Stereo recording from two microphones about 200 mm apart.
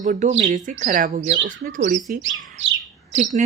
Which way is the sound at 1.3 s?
60° right (ahead or behind).